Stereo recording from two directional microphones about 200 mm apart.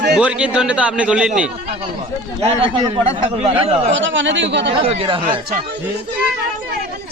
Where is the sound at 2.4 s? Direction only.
30° right (ahead or behind).